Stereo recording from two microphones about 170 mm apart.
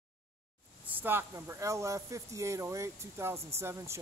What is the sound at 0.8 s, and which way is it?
Speech, 10° right (ahead or behind).